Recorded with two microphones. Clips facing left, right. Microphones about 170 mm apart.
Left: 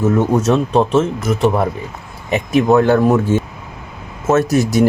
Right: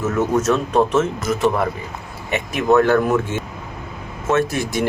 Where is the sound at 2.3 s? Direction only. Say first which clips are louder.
Left 4 dB; 30° left (ahead or behind).